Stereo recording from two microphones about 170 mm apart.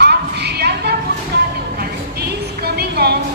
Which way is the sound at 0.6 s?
75° right (ahead or behind).